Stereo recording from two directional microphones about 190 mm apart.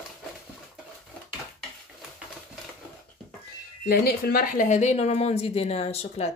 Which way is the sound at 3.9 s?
55° left (ahead or behind).